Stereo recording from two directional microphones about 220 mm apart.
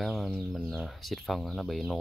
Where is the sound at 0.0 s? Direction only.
Centre (ahead or behind).